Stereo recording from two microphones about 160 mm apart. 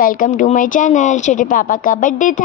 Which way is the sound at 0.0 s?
60° left (ahead or behind).